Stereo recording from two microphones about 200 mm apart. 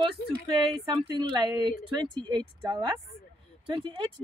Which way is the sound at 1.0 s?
20° right (ahead or behind).